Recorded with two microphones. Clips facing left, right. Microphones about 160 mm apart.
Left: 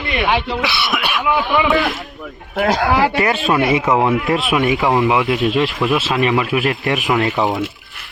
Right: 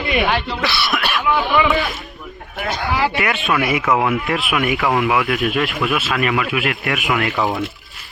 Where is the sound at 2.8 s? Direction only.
55° left (ahead or behind).